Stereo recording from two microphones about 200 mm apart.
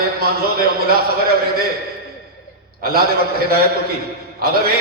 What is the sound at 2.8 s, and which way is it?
Speech, 50° right (ahead or behind).